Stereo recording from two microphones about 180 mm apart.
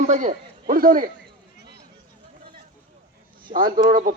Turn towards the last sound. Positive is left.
turn(degrees=-50)  # may be behind; listen again after turning